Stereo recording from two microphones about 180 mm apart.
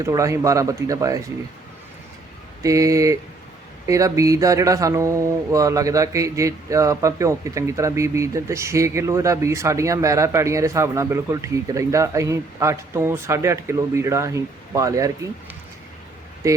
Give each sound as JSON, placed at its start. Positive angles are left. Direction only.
{"t": 0.0, "sound": "speech", "side_deg": -15}
{"t": 2.6, "sound": "speech", "side_deg": -20}
{"t": 16.4, "sound": "speech", "side_deg": -15}